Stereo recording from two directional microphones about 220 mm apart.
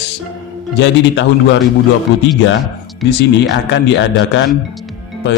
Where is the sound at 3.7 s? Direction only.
55° left (ahead or behind).